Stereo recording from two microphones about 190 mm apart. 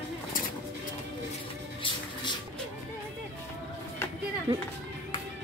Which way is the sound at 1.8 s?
25° left (ahead or behind).